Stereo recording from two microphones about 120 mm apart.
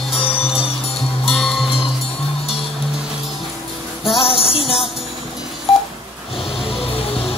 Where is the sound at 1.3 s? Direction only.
Centre (ahead or behind).